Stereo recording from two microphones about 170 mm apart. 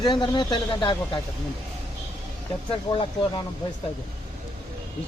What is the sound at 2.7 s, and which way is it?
Speech, 30° left (ahead or behind).